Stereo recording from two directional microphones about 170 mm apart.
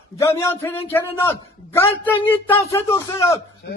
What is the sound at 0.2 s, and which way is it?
A man's voice, 15° left (ahead or behind).